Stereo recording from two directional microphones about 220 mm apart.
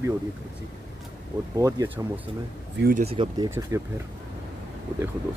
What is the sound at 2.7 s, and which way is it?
Speech, 45° right (ahead or behind).